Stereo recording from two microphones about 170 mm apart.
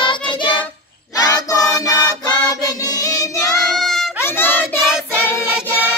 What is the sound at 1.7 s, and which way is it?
Music, 20° left (ahead or behind).